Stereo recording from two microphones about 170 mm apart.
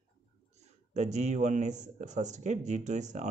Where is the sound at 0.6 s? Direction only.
40° right (ahead or behind).